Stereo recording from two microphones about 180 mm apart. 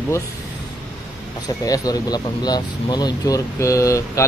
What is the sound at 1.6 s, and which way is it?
Speech, 20° left (ahead or behind).